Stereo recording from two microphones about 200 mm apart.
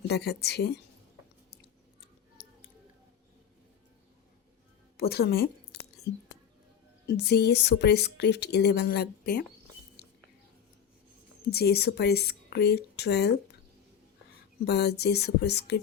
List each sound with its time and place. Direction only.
0.1 s speech: 55° left (ahead or behind)
2.4 s scissors: 55° left (ahead or behind)
4.9 s speech: 50° left (ahead or behind)
7.1 s speech: 55° left (ahead or behind)
10.0 s a sound: 55° left (ahead or behind)
11.5 s speech: 55° left (ahead or behind)
14.6 s speech: 55° left (ahead or behind)